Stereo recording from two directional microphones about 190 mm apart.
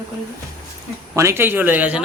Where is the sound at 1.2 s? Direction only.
15° right (ahead or behind).